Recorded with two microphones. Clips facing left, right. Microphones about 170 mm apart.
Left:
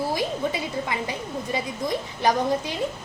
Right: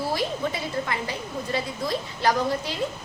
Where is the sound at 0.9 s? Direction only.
15° left (ahead or behind).